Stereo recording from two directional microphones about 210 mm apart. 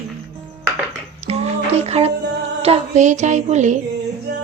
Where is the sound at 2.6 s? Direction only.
30° right (ahead or behind).